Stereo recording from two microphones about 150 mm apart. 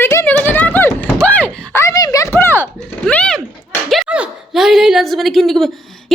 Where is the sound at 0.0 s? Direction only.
15° left (ahead or behind).